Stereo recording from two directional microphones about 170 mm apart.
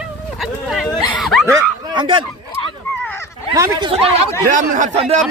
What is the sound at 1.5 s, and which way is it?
Speech, 20° right (ahead or behind).